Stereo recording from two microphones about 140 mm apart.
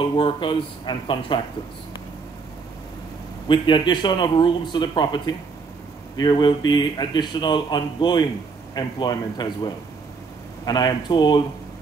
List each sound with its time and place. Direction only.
0.2 s speech: 35° left (ahead or behind)
3.4 s speech: 35° left (ahead or behind)